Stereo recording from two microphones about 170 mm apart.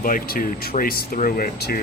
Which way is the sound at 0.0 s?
55° left (ahead or behind).